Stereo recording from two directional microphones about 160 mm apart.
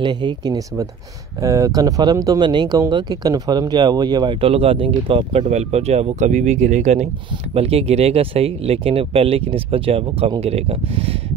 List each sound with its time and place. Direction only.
0.0 s speech: 25° right (ahead or behind)